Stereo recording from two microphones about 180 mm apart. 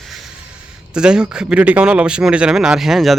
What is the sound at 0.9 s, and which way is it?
Speech, 5° right (ahead or behind).